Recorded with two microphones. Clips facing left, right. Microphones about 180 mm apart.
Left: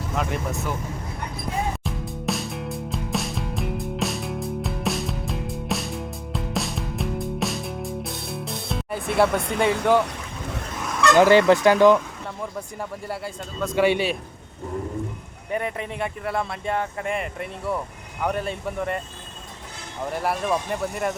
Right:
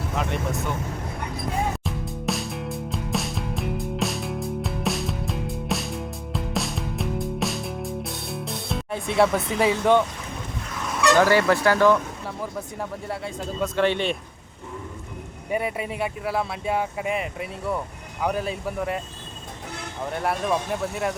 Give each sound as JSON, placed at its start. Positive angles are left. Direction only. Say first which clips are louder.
{"t": 0.2, "sound": "vehicle", "louder": "left 1 dB", "side_deg": 0}
{"t": 1.8, "sound": "music", "louder": "even", "side_deg": 0}
{"t": 11.2, "sound": "speech", "louder": "left 6 dB", "side_deg": 20}
{"t": 13.7, "sound": "a man's voice", "louder": "left 3 dB", "side_deg": 10}
{"t": 15.5, "sound": "speech", "louder": "right 1 dB", "side_deg": -10}
{"t": 20.1, "sound": "speech", "louder": "even", "side_deg": 0}